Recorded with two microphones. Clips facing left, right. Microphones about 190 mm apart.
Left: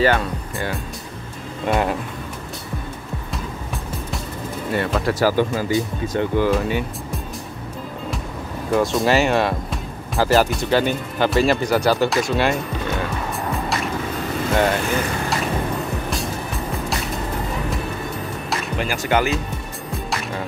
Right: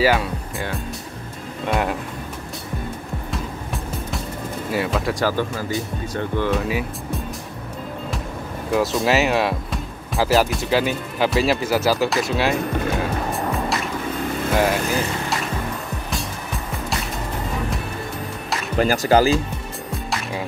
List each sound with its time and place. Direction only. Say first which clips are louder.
0.0 s speech: even; 5° right (ahead or behind)
4.6 s speech: left 1 dB; 5° right (ahead or behind)
5.7 s speech: left 4 dB; 20° left (ahead or behind)
6.4 s speech: left 2 dB; centre (ahead or behind)
8.7 s speech: left 1 dB; centre (ahead or behind)
12.9 s music: right 2 dB; centre (ahead or behind)
14.5 s speech: left 1 dB; centre (ahead or behind)
18.8 s speech: right 5 dB; 35° right (ahead or behind)